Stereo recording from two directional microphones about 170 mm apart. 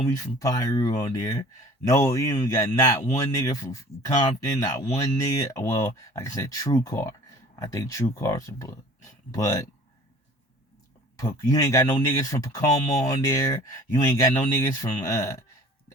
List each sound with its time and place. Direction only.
0.2 s speech: 20° left (ahead or behind)
11.2 s speech: 20° left (ahead or behind)